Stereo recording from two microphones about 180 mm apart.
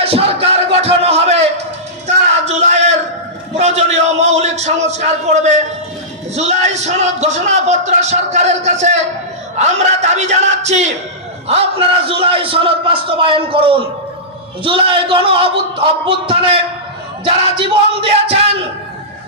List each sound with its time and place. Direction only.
0.0 s music: 35° right (ahead or behind)
2.0 s a sound: 40° right (ahead or behind)
6.3 s a man's voice: 40° right (ahead or behind)
18.0 s speech: 35° right (ahead or behind)